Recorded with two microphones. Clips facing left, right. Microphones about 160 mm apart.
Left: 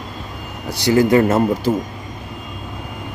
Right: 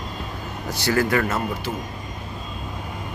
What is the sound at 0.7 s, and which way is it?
Speech, 15° left (ahead or behind).